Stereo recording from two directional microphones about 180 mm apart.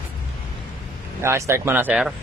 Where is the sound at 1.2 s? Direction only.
15° right (ahead or behind).